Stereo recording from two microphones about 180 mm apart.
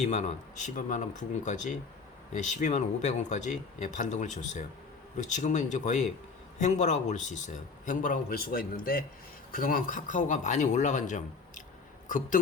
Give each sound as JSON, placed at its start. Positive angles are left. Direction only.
{"t": 0.0, "sound": "a man's voice", "side_deg": 40}